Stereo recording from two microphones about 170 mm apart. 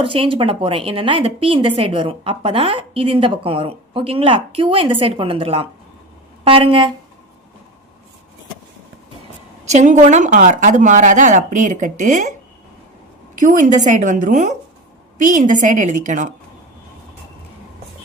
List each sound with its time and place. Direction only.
0.0 s a woman's voice: 30° right (ahead or behind)
9.6 s speech: 45° right (ahead or behind)
13.4 s speech: 50° right (ahead or behind)